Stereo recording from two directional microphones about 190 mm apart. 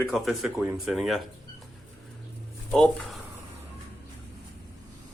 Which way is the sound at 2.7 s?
Centre (ahead or behind).